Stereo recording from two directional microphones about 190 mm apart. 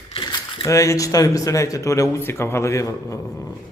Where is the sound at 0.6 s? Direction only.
15° left (ahead or behind).